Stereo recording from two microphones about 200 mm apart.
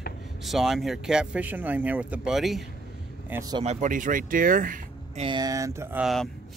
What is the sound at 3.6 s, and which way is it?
Speech, 35° right (ahead or behind).